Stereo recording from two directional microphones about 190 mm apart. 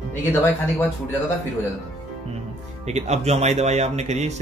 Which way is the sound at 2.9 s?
35° right (ahead or behind).